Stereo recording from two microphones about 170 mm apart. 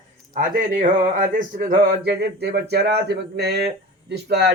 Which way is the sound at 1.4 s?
55° right (ahead or behind).